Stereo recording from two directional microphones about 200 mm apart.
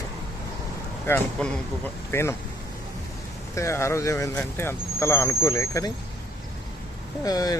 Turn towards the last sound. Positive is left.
turn(degrees=20)  # may be behind; listen again after turning